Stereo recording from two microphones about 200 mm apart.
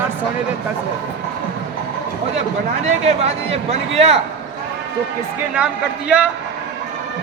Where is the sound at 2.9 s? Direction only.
30° right (ahead or behind).